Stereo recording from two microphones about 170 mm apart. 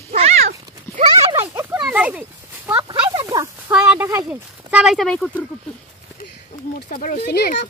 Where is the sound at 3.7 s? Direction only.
5° right (ahead or behind).